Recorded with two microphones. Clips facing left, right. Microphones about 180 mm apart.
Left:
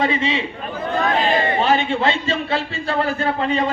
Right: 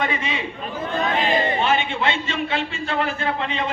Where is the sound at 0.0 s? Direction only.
30° left (ahead or behind).